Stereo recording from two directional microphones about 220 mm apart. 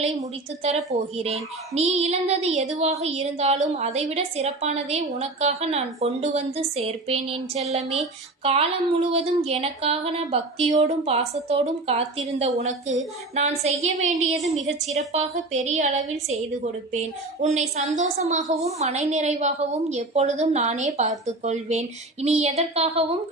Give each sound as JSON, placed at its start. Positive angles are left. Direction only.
{"t": 0.6, "sound": "a woman's voice", "side_deg": -30}
{"t": 17.4, "sound": "a woman's voice", "side_deg": -30}